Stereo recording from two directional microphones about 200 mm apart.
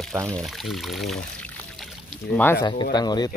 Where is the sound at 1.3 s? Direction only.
5° left (ahead or behind).